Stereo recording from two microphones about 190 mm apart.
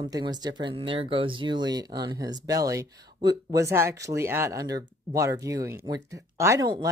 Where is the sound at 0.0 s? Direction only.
20° right (ahead or behind).